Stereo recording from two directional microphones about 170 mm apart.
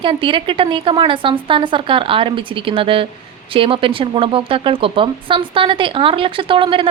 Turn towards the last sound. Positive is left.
turn(degrees=-30)  # may be behind; listen again after turning